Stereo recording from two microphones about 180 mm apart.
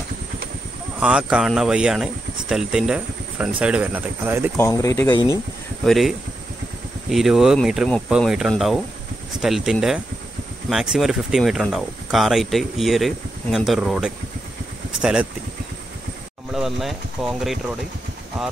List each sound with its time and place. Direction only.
0.9 s speech: 5° right (ahead or behind)
4.6 s speech: 15° left (ahead or behind)
5.9 s speech: centre (ahead or behind)
16.5 s speech: centre (ahead or behind)